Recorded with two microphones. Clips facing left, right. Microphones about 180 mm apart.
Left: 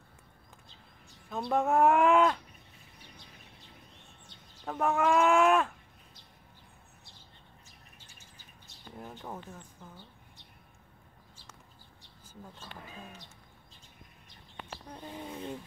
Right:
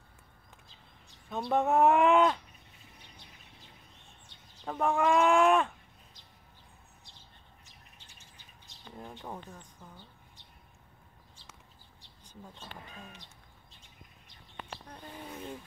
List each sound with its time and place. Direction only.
1.5 s speech: centre (ahead or behind)
4.6 s speech: 5° left (ahead or behind)
8.9 s speech: 5° left (ahead or behind)
15.0 s speech: 20° left (ahead or behind)